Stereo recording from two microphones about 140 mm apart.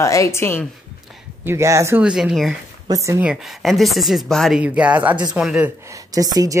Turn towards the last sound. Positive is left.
turn(degrees=-25)  # may be behind; listen again after turning